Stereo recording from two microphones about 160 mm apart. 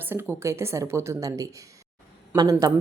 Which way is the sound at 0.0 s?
10° right (ahead or behind).